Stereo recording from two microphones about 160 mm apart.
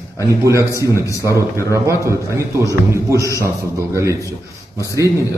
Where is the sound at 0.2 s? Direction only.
20° right (ahead or behind).